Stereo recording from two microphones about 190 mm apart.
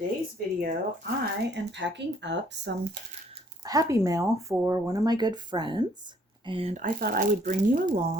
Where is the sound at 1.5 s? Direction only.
70° right (ahead or behind).